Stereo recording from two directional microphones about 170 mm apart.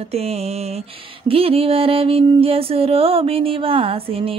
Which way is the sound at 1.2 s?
35° right (ahead or behind).